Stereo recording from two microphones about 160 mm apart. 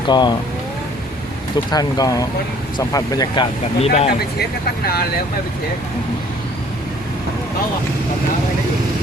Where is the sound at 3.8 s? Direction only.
40° left (ahead or behind).